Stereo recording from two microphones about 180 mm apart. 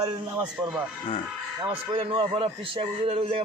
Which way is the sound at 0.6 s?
5° right (ahead or behind).